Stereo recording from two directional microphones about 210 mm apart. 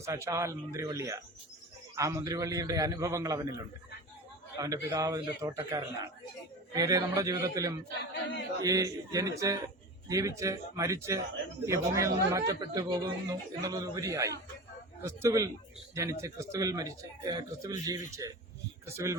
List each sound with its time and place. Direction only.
0.0 s speech: 15° right (ahead or behind)
4.5 s speech: 15° right (ahead or behind)